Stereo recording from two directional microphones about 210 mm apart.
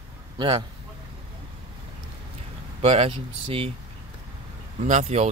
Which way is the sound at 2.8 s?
30° right (ahead or behind).